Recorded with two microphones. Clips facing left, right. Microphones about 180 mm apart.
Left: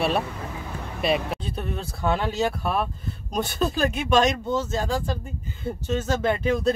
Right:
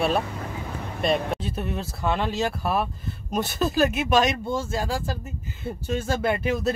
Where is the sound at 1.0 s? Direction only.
Centre (ahead or behind).